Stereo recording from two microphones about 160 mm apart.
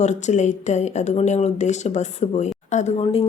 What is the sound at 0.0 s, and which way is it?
A woman's voice, 45° left (ahead or behind).